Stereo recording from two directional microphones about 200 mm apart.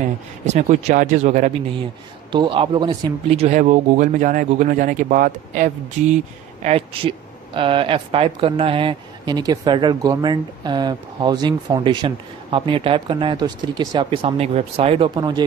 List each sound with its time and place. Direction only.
0.5 s speech: 35° right (ahead or behind)
2.3 s speech: 25° right (ahead or behind)